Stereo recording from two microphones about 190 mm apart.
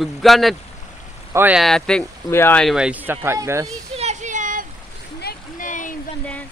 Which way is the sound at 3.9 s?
35° right (ahead or behind).